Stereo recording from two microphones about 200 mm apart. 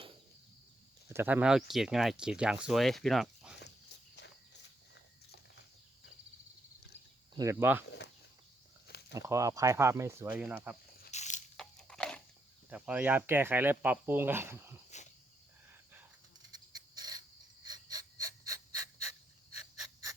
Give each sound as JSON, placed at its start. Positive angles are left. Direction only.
{"t": 1.1, "sound": "speech", "side_deg": -10}
{"t": 7.3, "sound": "speech", "side_deg": -10}
{"t": 7.9, "sound": "a sound", "side_deg": 55}
{"t": 8.9, "sound": "snake", "side_deg": 55}
{"t": 9.1, "sound": "speech", "side_deg": -15}
{"t": 11.1, "sound": "a sound", "side_deg": 35}
{"t": 11.5, "sound": "crunch", "side_deg": 5}
{"t": 12.7, "sound": "speech", "side_deg": -5}
{"t": 14.8, "sound": "cricket", "side_deg": 35}
{"t": 16.7, "sound": "gasp", "side_deg": -20}